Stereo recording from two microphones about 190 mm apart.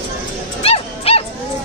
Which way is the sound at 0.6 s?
30° left (ahead or behind).